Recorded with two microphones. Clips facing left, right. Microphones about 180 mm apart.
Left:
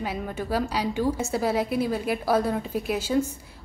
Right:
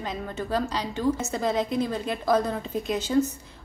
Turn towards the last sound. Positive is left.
turn(degrees=10)  # may be behind; listen again after turning